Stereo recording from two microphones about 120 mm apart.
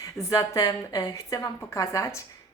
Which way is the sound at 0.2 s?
30° left (ahead or behind).